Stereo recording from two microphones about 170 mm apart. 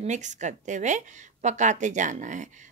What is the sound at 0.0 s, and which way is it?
A woman's voice, 45° right (ahead or behind).